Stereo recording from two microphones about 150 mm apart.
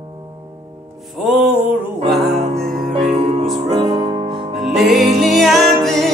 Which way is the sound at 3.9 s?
25° right (ahead or behind).